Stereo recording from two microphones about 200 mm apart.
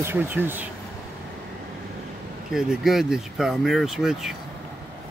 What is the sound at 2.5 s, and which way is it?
Speech, centre (ahead or behind).